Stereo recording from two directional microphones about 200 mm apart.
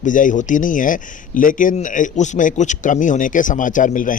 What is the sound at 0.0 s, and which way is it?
Speech, 40° left (ahead or behind).